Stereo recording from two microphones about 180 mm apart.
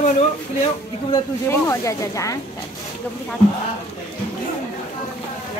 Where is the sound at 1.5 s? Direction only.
15° left (ahead or behind).